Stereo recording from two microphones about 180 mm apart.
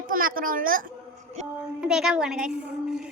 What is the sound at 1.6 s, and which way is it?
A woman's voice, 5° right (ahead or behind).